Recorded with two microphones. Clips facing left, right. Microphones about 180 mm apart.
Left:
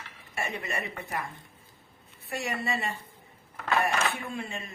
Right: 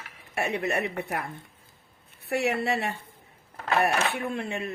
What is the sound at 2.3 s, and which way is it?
Speech, 65° right (ahead or behind).